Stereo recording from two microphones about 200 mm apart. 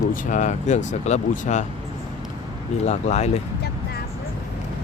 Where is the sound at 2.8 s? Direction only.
35° left (ahead or behind).